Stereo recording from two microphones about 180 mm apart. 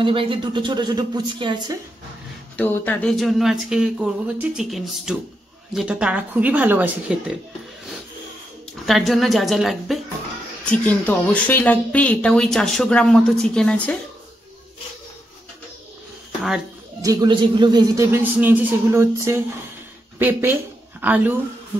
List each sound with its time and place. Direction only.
0.0 s speech: 30° right (ahead or behind)
2.5 s speech: 10° left (ahead or behind); by 7.3 s 5° right (ahead or behind)
8.8 s speech: centre (ahead or behind)
17.0 s speech: 20° right (ahead or behind)
18.1 s speech: 10° right (ahead or behind)